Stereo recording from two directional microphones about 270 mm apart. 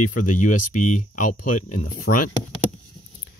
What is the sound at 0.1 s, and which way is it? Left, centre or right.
Speech, left.